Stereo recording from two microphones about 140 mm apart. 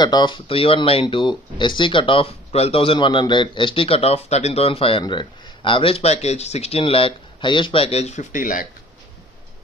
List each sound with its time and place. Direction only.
0.0 s speech: 30° left (ahead or behind); by 8.6 s 70° left (ahead or behind)